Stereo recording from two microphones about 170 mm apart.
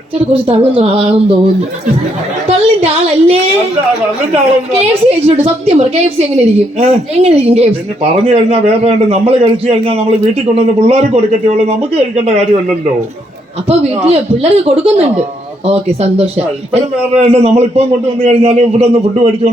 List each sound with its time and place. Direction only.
0.4 s a man's voice: 35° right (ahead or behind)
2.5 s a sound: 35° right (ahead or behind)
4.7 s a man's voice: 35° right (ahead or behind)